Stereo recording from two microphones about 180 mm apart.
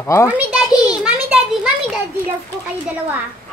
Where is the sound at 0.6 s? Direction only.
20° left (ahead or behind).